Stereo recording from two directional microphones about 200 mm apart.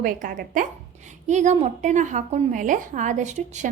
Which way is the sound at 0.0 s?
45° right (ahead or behind).